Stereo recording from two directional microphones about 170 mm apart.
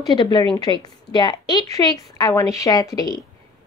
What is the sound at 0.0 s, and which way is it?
Speech, 25° left (ahead or behind).